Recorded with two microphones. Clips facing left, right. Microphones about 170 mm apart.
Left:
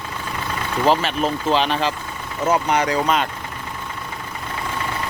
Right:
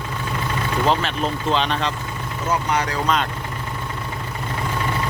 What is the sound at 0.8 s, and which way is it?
Speech, centre (ahead or behind).